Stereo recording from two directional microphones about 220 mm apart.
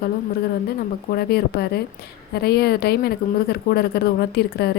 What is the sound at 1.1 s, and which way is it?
A woman's voice, 45° left (ahead or behind).